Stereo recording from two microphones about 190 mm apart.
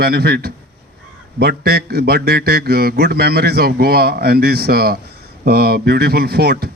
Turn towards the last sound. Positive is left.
turn(degrees=-55)  # may be behind; listen again after turning